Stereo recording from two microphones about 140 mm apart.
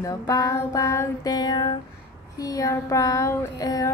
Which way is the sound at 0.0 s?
25° left (ahead or behind).